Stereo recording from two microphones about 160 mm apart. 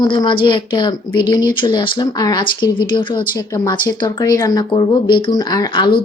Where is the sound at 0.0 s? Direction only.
30° left (ahead or behind).